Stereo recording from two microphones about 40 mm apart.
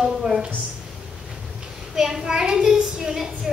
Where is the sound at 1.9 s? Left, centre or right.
Centre.